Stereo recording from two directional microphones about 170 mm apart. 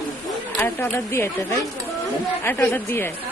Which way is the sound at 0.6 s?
10° left (ahead or behind).